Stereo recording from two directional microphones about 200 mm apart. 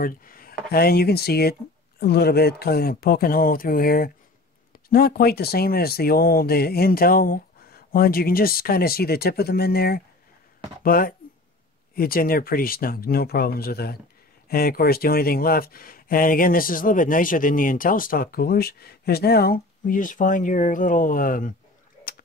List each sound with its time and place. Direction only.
0.0 s speech: 45° left (ahead or behind)